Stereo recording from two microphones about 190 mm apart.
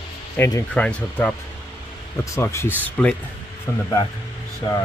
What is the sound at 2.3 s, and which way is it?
Speech, 15° left (ahead or behind).